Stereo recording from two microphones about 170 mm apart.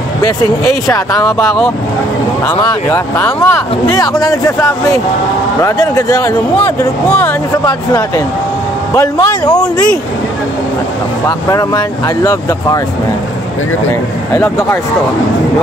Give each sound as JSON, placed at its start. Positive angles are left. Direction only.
{"t": 0.8, "sound": "speech", "side_deg": 20}
{"t": 2.6, "sound": "speech", "side_deg": 15}
{"t": 8.9, "sound": "speech", "side_deg": 20}
{"t": 11.2, "sound": "speech", "side_deg": 20}
{"t": 14.3, "sound": "speech", "side_deg": 15}